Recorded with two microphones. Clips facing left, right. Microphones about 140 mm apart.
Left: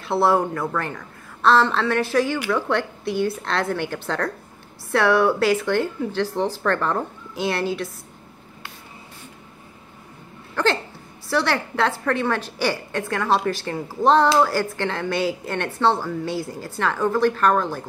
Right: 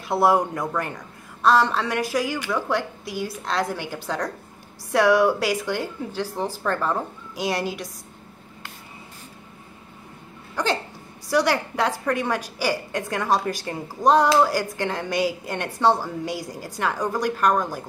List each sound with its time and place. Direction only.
0.1 s a woman's voice: 15° right (ahead or behind)
10.5 s hiccup: 10° right (ahead or behind)
11.2 s a woman's voice: 15° right (ahead or behind)